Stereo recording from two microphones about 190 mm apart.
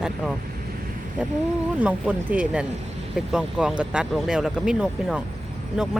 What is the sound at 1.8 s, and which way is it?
Speech, 5° right (ahead or behind).